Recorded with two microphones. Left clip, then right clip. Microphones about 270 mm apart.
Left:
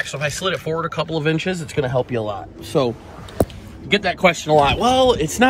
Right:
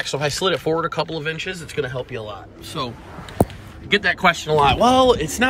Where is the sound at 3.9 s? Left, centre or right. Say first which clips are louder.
Even; centre.